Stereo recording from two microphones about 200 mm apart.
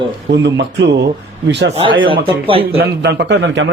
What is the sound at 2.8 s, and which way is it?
Speech, 55° right (ahead or behind).